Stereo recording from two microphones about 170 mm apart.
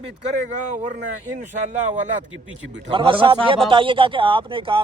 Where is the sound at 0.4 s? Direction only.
45° right (ahead or behind).